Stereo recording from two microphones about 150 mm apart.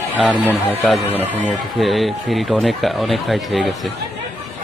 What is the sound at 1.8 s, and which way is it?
Speech, centre (ahead or behind).